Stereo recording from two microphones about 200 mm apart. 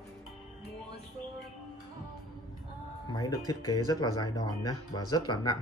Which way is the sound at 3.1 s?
20° left (ahead or behind).